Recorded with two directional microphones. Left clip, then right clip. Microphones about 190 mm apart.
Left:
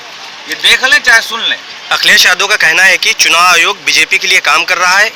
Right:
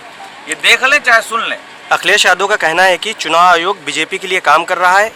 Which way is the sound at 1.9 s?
20° right (ahead or behind).